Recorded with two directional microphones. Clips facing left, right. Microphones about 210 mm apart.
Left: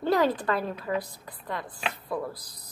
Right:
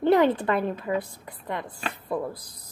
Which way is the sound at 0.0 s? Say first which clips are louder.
Right 4 dB; 20° right (ahead or behind).